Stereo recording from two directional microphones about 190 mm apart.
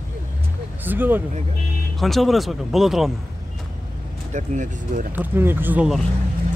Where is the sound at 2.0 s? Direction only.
Centre (ahead or behind).